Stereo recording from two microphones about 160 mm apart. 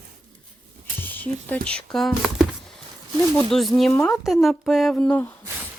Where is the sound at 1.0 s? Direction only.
10° left (ahead or behind).